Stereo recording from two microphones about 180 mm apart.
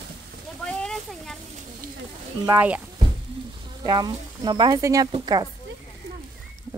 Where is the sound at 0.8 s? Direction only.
5° left (ahead or behind).